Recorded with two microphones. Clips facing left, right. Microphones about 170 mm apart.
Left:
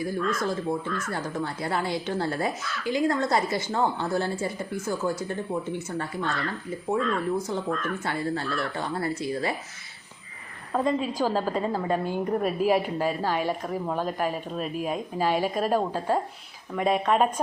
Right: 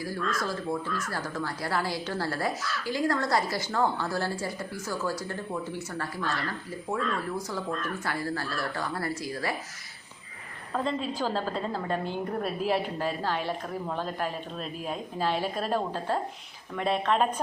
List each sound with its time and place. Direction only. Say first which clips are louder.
0.3 s speech: left 3 dB; 20° left (ahead or behind)
10.7 s a woman's voice: left 4 dB; 10° left (ahead or behind)